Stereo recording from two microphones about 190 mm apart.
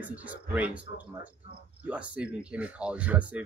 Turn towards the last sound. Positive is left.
turn(degrees=-5)  # may be behind; listen again after turning